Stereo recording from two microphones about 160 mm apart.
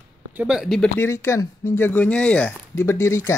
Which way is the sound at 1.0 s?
15° left (ahead or behind).